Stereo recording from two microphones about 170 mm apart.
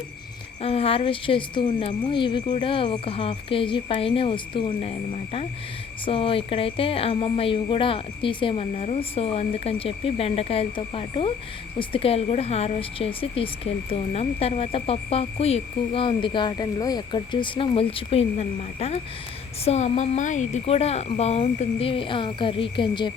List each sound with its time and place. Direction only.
0.6 s a woman's voice: 35° left (ahead or behind)